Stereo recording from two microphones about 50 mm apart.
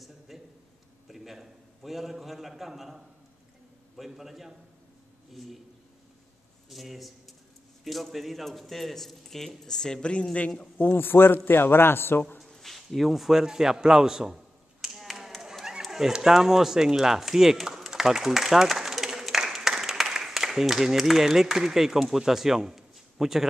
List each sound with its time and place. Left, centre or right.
0.3 s a sound: centre
3.9 s speech: centre
6.7 s a man's voice: centre
10.8 s a man's voice: left
12.4 s a sound: centre
15.0 s tap: centre
15.8 s speech: centre